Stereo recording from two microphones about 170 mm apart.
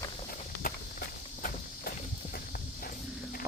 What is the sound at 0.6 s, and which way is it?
Walk, 60° left (ahead or behind).